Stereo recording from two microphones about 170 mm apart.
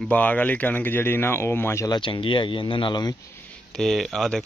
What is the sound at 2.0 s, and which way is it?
Speech, 30° left (ahead or behind).